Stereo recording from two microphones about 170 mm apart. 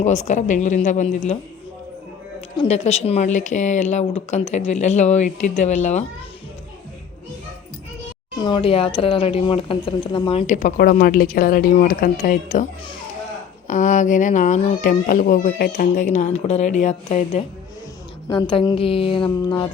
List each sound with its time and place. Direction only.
0.0 s a woman's voice: 45° left (ahead or behind)
2.6 s a woman's voice: 40° left (ahead or behind)
8.4 s a woman's voice: 25° left (ahead or behind); by 12.6 s 50° left (ahead or behind)
13.7 s a woman's voice: 45° left (ahead or behind)
18.3 s a woman's voice: 30° left (ahead or behind)